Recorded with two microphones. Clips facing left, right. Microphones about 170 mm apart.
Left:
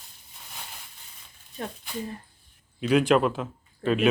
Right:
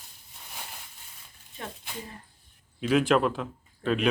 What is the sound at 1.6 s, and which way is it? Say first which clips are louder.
Speech: left 5 dB; 35° left (ahead or behind).